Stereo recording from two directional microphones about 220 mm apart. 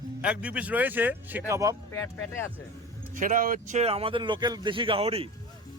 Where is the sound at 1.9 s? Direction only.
10° left (ahead or behind).